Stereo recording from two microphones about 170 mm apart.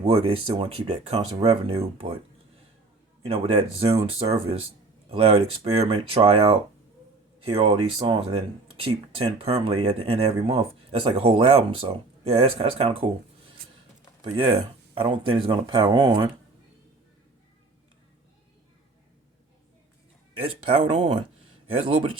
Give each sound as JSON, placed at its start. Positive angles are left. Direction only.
{"t": 0.0, "sound": "speech", "side_deg": -35}
{"t": 3.2, "sound": "speech", "side_deg": -35}
{"t": 14.2, "sound": "speech", "side_deg": -30}
{"t": 20.4, "sound": "speech", "side_deg": -35}